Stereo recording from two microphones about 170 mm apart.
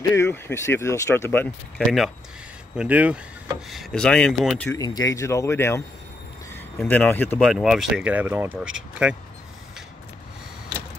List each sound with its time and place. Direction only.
0.1 s speech: 15° left (ahead or behind)
2.7 s speech: 5° right (ahead or behind)
3.7 s speech: 5° left (ahead or behind)
4.6 s speech: 20° left (ahead or behind); by 9.1 s 5° right (ahead or behind)